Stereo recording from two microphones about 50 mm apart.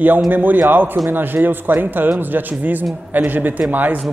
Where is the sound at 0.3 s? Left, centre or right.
Right.